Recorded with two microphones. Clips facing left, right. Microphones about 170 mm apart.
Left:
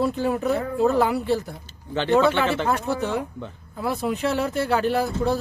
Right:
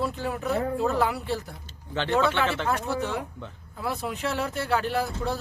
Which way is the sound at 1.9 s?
5° left (ahead or behind).